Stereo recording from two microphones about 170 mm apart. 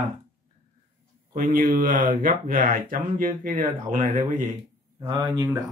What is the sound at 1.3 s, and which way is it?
Speech, 55° right (ahead or behind).